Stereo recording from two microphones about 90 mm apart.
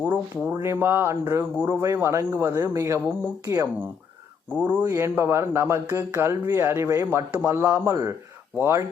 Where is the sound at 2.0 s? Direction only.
30° right (ahead or behind).